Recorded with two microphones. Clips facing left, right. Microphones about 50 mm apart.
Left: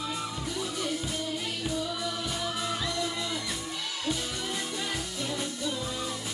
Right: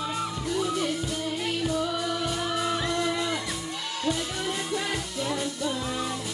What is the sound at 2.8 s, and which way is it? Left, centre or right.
Music, right.